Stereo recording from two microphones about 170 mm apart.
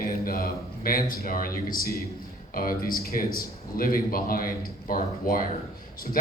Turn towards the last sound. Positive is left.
turn(degrees=55)  # may be behind; listen again after turning